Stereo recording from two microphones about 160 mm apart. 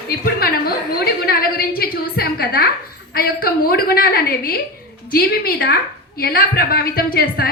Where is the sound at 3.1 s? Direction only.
70° left (ahead or behind).